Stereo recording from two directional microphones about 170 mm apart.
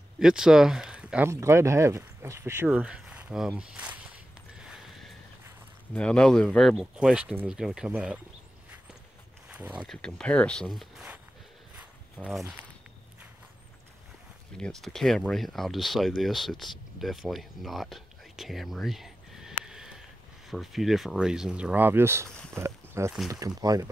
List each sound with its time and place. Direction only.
0.2 s speech: 5° right (ahead or behind)
4.6 s a sound: centre (ahead or behind)
5.9 s speech: 5° left (ahead or behind)
9.8 s speech: 5° left (ahead or behind)
12.2 s speech: centre (ahead or behind)
14.6 s speech: centre (ahead or behind); by 23.1 s 15° right (ahead or behind)
23.1 s speech: centre (ahead or behind)
23.4 s speech: 20° right (ahead or behind)